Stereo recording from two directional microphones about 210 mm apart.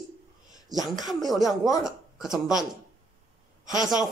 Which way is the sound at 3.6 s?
20° left (ahead or behind).